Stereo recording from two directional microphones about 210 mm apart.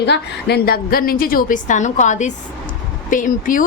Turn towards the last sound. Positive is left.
turn(degrees=40)  # may be behind; listen again after turning